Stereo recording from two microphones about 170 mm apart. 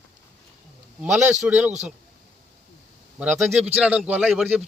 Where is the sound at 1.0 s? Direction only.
10° right (ahead or behind).